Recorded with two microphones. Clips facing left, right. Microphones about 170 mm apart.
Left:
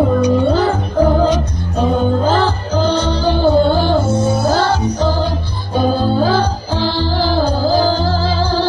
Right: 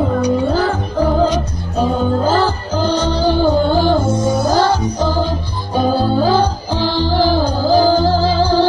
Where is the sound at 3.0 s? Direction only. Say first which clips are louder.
Even; 15° right (ahead or behind).